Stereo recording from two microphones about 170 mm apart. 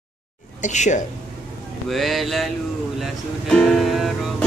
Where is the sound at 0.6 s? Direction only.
45° left (ahead or behind).